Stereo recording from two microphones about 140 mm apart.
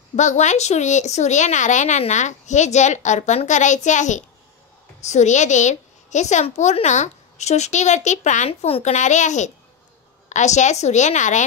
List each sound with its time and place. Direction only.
0.1 s speech: 60° left (ahead or behind)
8.5 s speech: 45° left (ahead or behind); by 11.4 s 60° left (ahead or behind)